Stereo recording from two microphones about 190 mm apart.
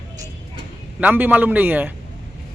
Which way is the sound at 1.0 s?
10° right (ahead or behind).